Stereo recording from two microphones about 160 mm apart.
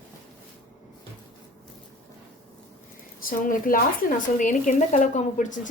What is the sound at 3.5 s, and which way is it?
A woman's voice, 60° left (ahead or behind).